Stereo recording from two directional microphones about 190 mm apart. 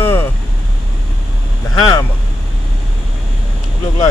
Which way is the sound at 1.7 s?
20° left (ahead or behind).